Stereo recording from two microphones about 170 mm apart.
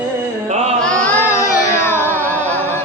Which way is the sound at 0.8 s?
5° left (ahead or behind).